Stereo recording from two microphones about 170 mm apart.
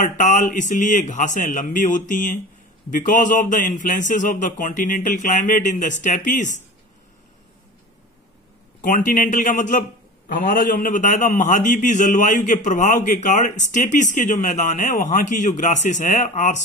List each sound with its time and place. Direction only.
0.0 s a man's voice: 50° left (ahead or behind)
8.8 s a man's voice: 50° left (ahead or behind)